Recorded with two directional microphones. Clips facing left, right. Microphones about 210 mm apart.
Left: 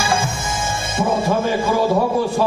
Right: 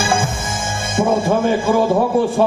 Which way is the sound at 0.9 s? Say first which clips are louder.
Right 3 dB; 50° right (ahead or behind).